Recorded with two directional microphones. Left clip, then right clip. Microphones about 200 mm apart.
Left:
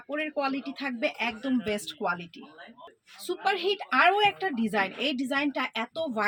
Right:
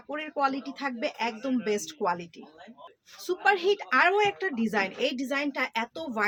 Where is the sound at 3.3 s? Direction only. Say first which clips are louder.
Right 3 dB; 20° right (ahead or behind).